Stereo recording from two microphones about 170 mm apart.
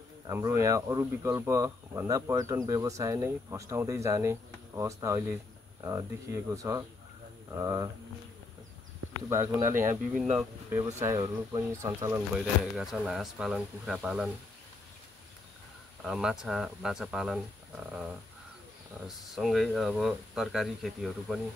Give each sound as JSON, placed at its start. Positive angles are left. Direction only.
{"t": 0.3, "sound": "speech", "side_deg": -20}
{"t": 9.3, "sound": "speech", "side_deg": -15}
{"t": 12.7, "sound": "speech", "side_deg": 0}
{"t": 16.0, "sound": "speech", "side_deg": -5}